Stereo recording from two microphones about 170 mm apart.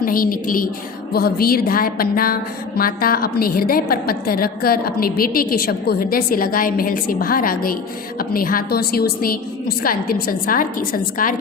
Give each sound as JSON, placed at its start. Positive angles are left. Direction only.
{"t": 0.0, "sound": "a woman's voice", "side_deg": 55}